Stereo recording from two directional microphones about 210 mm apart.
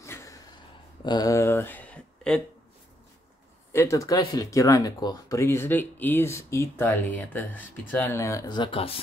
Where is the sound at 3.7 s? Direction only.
15° left (ahead or behind).